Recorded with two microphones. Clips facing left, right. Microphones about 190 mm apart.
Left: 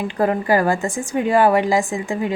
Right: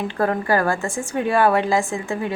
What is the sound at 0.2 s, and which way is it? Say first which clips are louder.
A woman's voice: left 3 dB; 15° left (ahead or behind).